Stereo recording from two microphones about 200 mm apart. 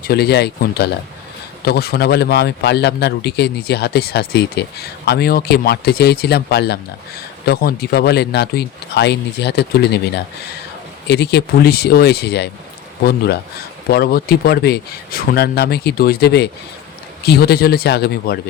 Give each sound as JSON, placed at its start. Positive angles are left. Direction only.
{"t": 0.0, "sound": "speech", "side_deg": 50}
{"t": 11.1, "sound": "speech", "side_deg": 55}